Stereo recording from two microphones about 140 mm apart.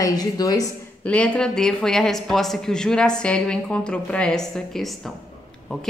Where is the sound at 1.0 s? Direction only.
10° left (ahead or behind).